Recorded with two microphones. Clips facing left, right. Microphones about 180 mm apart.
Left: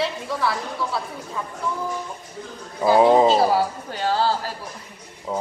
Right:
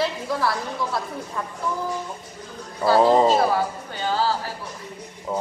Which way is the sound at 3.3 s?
35° left (ahead or behind).